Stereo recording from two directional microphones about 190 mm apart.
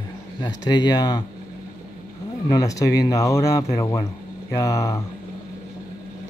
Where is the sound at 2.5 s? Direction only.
20° left (ahead or behind).